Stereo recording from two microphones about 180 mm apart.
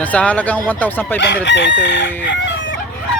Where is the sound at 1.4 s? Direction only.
75° left (ahead or behind).